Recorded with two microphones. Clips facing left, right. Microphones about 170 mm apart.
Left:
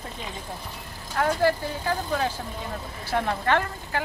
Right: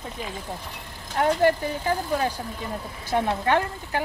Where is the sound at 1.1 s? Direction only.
20° right (ahead or behind).